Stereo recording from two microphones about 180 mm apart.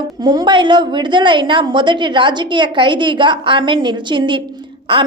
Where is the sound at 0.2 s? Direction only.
25° right (ahead or behind).